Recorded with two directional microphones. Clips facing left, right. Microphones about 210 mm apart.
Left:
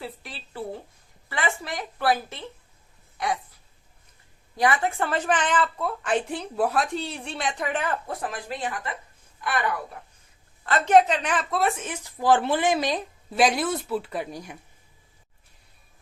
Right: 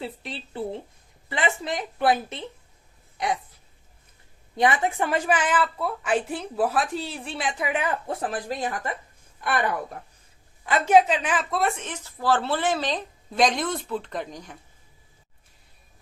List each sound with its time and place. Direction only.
0.0 s a woman's voice: 25° right (ahead or behind)
4.5 s a woman's voice: 20° right (ahead or behind)
8.2 s speech: 35° right (ahead or behind)
10.7 s speech: 10° right (ahead or behind); by 14.6 s 10° left (ahead or behind)